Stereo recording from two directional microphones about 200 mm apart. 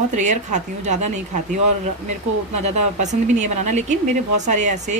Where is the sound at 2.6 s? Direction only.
35° right (ahead or behind).